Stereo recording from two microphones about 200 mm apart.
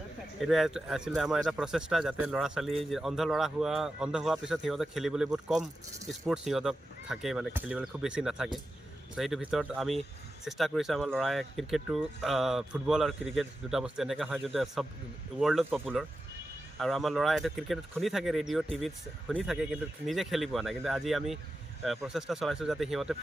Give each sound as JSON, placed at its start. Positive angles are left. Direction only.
{"t": 0.3, "sound": "speech", "side_deg": 0}